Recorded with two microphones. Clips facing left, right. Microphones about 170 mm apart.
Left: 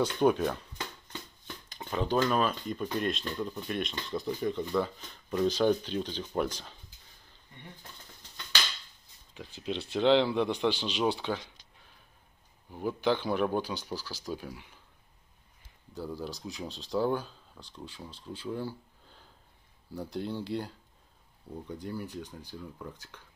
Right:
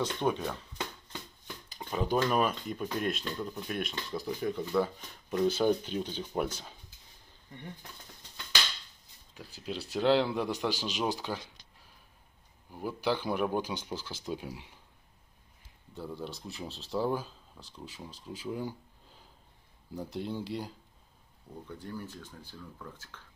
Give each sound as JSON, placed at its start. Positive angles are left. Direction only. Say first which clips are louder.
{"t": 0.2, "sound": "speech", "louder": "left 7 dB", "side_deg": 5}
{"t": 1.7, "sound": "speech", "louder": "even", "side_deg": -5}
{"t": 9.3, "sound": "speech", "louder": "left 3 dB", "side_deg": -5}
{"t": 12.7, "sound": "speech", "louder": "left 3 dB", "side_deg": -5}
{"t": 15.9, "sound": "speech", "louder": "left 2 dB", "side_deg": 0}
{"t": 20.1, "sound": "speech", "louder": "left 2 dB", "side_deg": 0}
{"t": 21.6, "sound": "speech", "louder": "left 3 dB", "side_deg": 15}